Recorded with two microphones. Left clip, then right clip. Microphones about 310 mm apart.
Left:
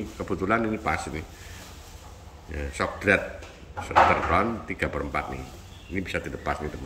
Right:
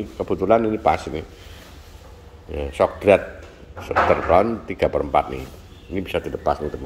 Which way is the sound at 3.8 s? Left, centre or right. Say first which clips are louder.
Right 1 dB; left.